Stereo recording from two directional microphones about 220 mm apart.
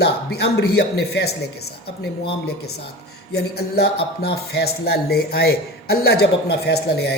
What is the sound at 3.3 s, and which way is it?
Speech, 45° left (ahead or behind).